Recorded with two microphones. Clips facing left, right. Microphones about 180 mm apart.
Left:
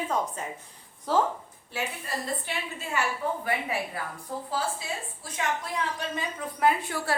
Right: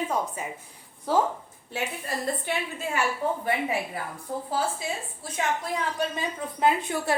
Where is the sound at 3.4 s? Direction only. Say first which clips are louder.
Right 3 dB; 25° right (ahead or behind).